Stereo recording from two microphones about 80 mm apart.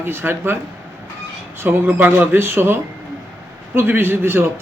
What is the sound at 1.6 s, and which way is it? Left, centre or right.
A man's voice, right.